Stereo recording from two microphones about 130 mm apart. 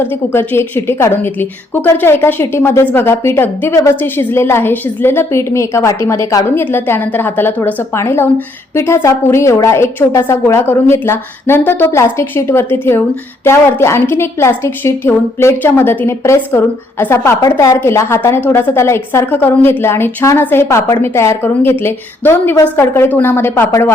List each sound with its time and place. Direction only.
0.0 s a woman's voice: 20° left (ahead or behind)